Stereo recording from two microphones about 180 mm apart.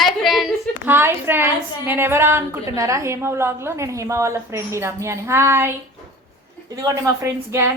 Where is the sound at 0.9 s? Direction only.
10° right (ahead or behind).